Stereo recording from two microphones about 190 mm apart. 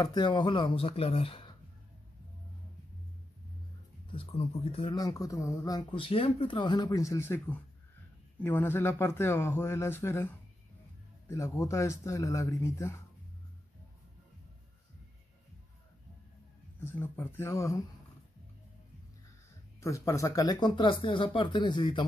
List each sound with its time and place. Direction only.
0.0 s speech: 20° left (ahead or behind)
4.1 s a man's voice: 30° left (ahead or behind)
16.8 s a man's voice: 10° left (ahead or behind)
19.8 s speech: 15° left (ahead or behind)